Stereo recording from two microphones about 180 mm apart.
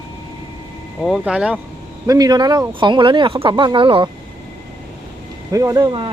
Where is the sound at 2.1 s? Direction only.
20° right (ahead or behind).